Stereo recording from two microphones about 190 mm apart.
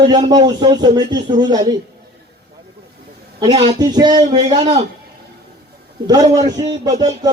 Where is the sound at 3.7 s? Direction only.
20° right (ahead or behind).